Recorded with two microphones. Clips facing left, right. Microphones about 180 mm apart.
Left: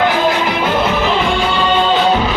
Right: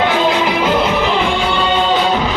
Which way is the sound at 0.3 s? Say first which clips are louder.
Right 1 dB; 20° right (ahead or behind).